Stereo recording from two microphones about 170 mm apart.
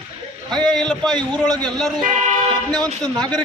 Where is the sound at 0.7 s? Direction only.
Centre (ahead or behind).